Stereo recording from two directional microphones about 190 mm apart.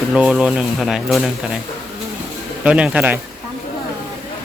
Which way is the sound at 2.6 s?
5° right (ahead or behind).